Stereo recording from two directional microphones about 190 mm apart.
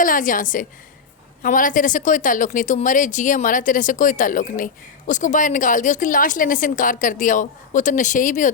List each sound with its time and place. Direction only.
0.0 s speech: 45° left (ahead or behind)